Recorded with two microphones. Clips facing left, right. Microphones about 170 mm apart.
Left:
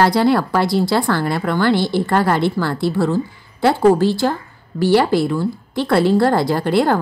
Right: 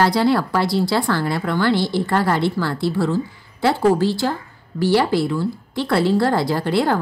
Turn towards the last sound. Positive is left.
turn(degrees=55)  # may be behind; listen again after turning